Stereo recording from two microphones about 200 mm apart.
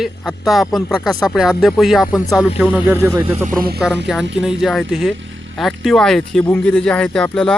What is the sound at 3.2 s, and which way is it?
Speech, 35° right (ahead or behind).